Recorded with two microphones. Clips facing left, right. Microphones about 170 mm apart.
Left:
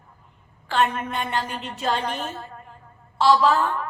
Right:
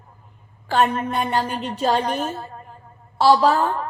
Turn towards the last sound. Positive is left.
turn(degrees=-35)  # may be behind; listen again after turning